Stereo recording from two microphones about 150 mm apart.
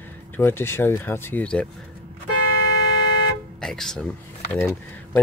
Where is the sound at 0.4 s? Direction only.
15° left (ahead or behind).